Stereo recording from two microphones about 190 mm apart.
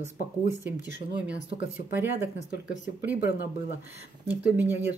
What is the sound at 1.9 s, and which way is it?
Speech, 10° right (ahead or behind).